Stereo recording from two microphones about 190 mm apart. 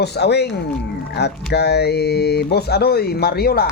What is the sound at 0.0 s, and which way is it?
Speech, 60° left (ahead or behind).